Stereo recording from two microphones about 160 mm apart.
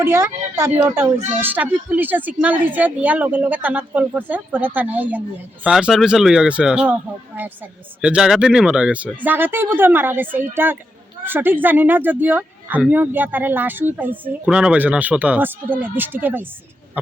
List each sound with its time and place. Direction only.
0.0 s speech: 15° right (ahead or behind)